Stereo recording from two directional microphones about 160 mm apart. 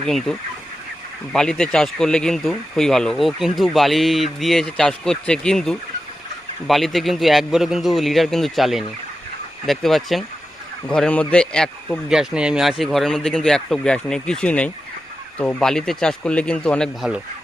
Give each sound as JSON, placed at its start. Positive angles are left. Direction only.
{"t": 0.0, "sound": "speech", "side_deg": 0}